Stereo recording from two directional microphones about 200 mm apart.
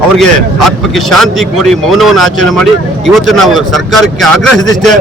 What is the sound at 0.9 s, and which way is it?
Speech, centre (ahead or behind).